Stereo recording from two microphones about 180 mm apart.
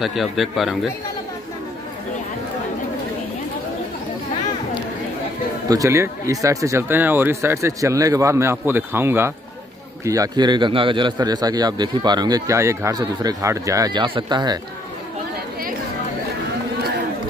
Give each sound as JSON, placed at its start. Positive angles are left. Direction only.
{"t": 0.0, "sound": "speech", "side_deg": 0}
{"t": 5.7, "sound": "a man's voice", "side_deg": -15}